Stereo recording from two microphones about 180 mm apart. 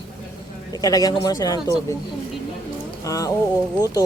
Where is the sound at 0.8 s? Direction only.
20° left (ahead or behind).